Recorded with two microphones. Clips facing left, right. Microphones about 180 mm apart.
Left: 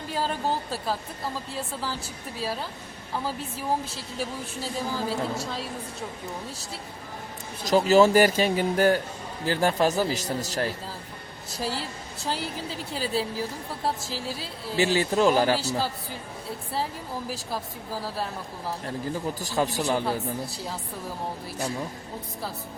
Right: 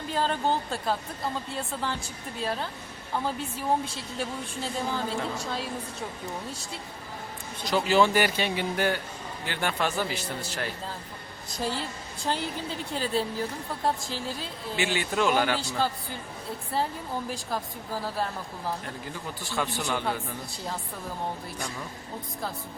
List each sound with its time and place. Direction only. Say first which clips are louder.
0.1 s speech: right 1 dB; 5° left (ahead or behind)
7.6 s speech: left 5 dB; 40° left (ahead or behind)
11.5 s speech: even; 5° left (ahead or behind)
14.8 s speech: left 5 dB; 35° left (ahead or behind)
16.7 s speech: right 2 dB; centre (ahead or behind)
19.4 s speech: left 2 dB; 40° left (ahead or behind)
20.1 s speech: left 3 dB; centre (ahead or behind)